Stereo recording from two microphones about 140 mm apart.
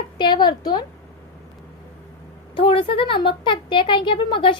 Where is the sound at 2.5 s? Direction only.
40° left (ahead or behind).